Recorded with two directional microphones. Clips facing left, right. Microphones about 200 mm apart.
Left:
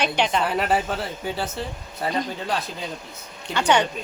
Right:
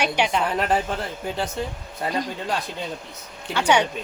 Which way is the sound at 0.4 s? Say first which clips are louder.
Even; 5° left (ahead or behind).